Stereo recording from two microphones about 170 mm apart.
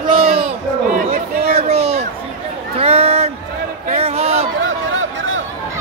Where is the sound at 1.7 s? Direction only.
35° right (ahead or behind).